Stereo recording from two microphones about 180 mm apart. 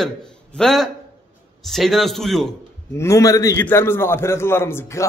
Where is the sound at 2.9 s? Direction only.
15° left (ahead or behind).